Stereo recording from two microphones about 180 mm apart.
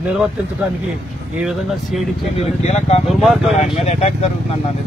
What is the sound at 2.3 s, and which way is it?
Speech, 35° left (ahead or behind).